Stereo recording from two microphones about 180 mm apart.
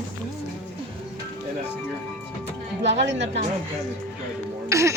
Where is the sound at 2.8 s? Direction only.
75° right (ahead or behind).